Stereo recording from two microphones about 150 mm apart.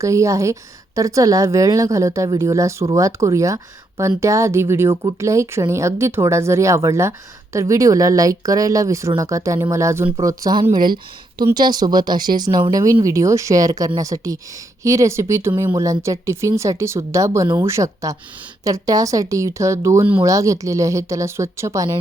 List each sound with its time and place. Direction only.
0.0 s speech: 20° right (ahead or behind)